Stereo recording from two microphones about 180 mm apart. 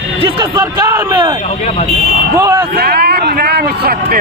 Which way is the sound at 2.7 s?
60° right (ahead or behind).